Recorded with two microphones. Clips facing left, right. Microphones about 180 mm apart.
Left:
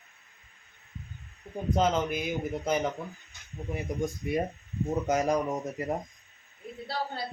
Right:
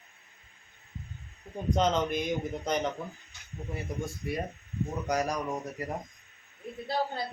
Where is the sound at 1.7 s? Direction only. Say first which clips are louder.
Even; 5° left (ahead or behind).